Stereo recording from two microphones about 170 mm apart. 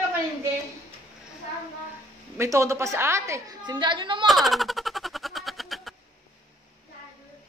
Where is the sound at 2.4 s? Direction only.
15° right (ahead or behind).